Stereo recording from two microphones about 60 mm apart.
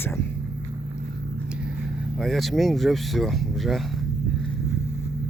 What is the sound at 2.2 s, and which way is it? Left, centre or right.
Speech, centre.